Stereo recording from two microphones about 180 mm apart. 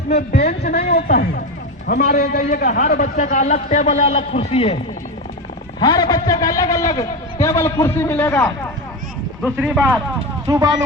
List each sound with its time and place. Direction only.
0.2 s a man's voice: 60° left (ahead or behind)
2.4 s a man's voice: 50° left (ahead or behind)
5.8 s a man's voice: 25° left (ahead or behind)
9.6 s speech: 10° right (ahead or behind)